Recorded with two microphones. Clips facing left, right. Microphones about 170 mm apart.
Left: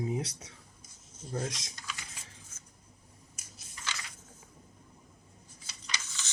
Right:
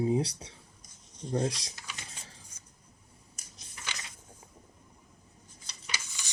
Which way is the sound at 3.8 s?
20° right (ahead or behind).